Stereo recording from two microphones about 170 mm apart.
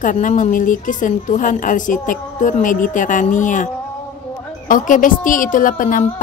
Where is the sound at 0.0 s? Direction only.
50° left (ahead or behind).